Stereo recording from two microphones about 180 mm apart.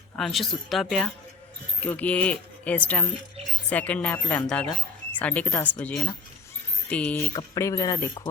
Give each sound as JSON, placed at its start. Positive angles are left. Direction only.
{"t": 0.2, "sound": "a woman's voice", "side_deg": 0}
{"t": 7.3, "sound": "speech", "side_deg": 20}